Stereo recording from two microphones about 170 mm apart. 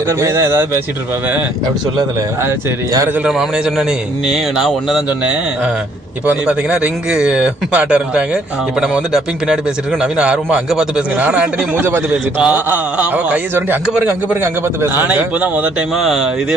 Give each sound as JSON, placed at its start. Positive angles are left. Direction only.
{"t": 0.1, "sound": "a man's voice", "side_deg": -15}
{"t": 2.4, "sound": "a man's voice", "side_deg": -15}
{"t": 3.2, "sound": "a man's voice", "side_deg": -5}